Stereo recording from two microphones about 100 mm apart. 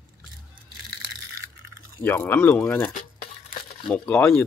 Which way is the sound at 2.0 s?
20° left (ahead or behind).